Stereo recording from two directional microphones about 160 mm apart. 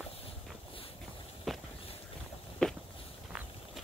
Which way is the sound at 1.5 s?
Centre (ahead or behind).